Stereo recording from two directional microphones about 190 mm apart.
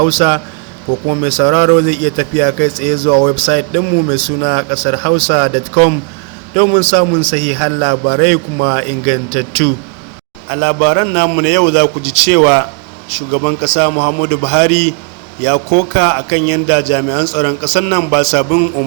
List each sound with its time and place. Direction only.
0.1 s a man's voice: 30° right (ahead or behind)
1.5 s speech: 65° right (ahead or behind)
1.9 s a man's voice: 30° right (ahead or behind)